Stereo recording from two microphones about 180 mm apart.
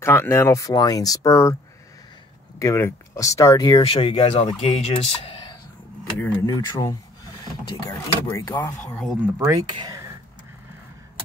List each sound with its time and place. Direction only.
0.0 s speech: 15° left (ahead or behind)
2.6 s speech: 15° left (ahead or behind)
3.8 s speech: 30° left (ahead or behind)
6.1 s speech: 15° left (ahead or behind)
8.3 s speech: 15° left (ahead or behind)
9.2 s speech: 10° right (ahead or behind)
9.6 s speech: 25° right (ahead or behind)